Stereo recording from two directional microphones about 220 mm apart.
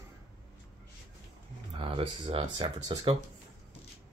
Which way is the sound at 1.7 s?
25° right (ahead or behind).